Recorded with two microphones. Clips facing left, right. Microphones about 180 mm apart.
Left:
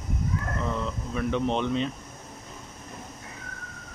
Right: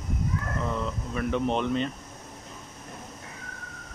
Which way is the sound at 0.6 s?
Centre (ahead or behind).